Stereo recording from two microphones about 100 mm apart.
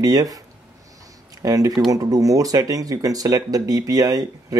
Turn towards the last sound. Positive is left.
turn(degrees=-40)  # may be behind; listen again after turning